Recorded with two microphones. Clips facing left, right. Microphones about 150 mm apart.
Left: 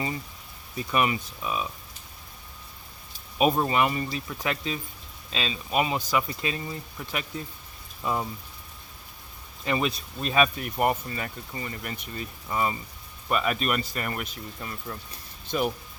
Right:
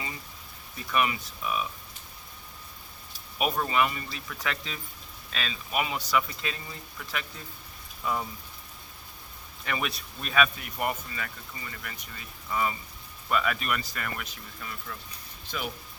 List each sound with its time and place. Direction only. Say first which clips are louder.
0.9 s speech: left 2 dB; 25° left (ahead or behind)
3.3 s speech: left 4 dB; 25° left (ahead or behind)
9.6 s speech: left 6 dB; 30° left (ahead or behind)
10.6 s speech: left 6 dB; 40° left (ahead or behind)